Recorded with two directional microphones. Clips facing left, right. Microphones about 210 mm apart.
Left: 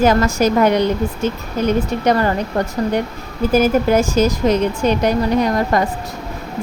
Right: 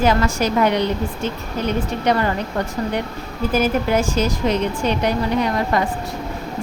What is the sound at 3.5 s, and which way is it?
Speech, 40° left (ahead or behind).